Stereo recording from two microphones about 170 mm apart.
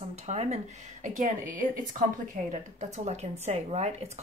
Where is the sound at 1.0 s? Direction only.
50° right (ahead or behind).